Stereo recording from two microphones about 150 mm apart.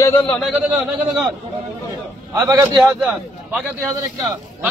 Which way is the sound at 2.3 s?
20° right (ahead or behind).